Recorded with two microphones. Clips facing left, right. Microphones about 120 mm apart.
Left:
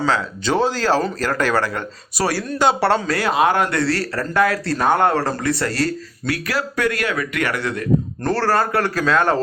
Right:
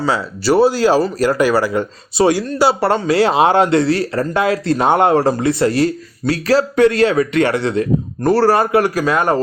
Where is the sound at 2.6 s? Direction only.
5° right (ahead or behind).